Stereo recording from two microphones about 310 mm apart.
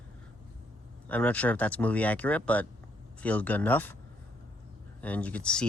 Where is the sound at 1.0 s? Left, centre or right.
Centre.